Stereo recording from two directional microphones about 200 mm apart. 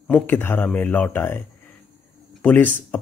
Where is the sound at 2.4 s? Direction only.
10° left (ahead or behind).